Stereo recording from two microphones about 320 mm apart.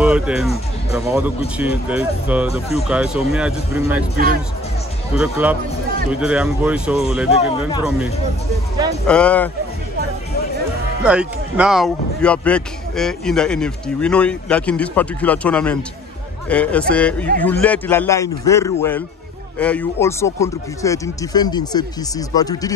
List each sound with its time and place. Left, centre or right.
0.0 s a man's voice: centre
5.1 s a man's voice: centre
7.2 s speech: centre
9.0 s a man's voice: centre
11.1 s a man's voice: centre